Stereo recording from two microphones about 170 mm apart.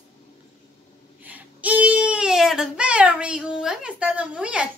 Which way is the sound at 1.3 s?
10° right (ahead or behind).